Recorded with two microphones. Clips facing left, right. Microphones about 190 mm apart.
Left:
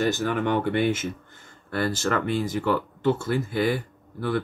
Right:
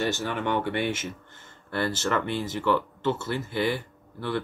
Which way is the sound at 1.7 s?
45° left (ahead or behind).